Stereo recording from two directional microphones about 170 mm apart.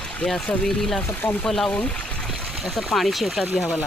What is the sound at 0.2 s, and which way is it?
Speech, 5° left (ahead or behind).